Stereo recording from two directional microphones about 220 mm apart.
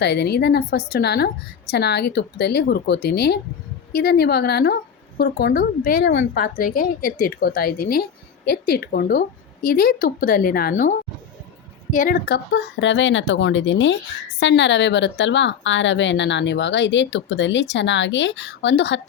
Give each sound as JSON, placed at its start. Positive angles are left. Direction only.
{"t": 0.0, "sound": "a woman's voice", "side_deg": 50}
{"t": 6.1, "sound": "speech", "side_deg": 55}
{"t": 6.4, "sound": "a woman's voice", "side_deg": 40}